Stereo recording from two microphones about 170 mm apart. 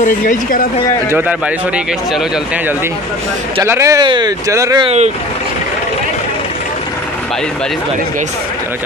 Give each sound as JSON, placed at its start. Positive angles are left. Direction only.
{"t": 0.0, "sound": "speech", "side_deg": 50}
{"t": 3.5, "sound": "speech", "side_deg": -15}
{"t": 4.8, "sound": "speech", "side_deg": -40}